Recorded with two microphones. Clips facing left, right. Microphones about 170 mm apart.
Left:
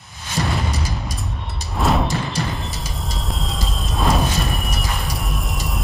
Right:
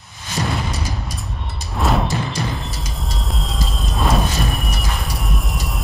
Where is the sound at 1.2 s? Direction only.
Centre (ahead or behind).